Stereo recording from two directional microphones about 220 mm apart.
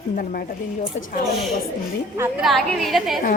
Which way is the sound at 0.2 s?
40° left (ahead or behind).